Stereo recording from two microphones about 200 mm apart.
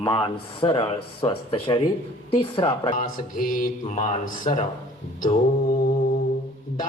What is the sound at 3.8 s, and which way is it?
Speech, 40° left (ahead or behind).